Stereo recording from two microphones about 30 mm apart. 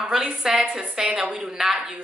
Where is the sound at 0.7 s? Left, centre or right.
Right.